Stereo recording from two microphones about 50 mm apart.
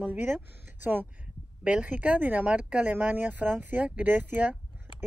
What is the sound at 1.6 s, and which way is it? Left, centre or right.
Speech, right.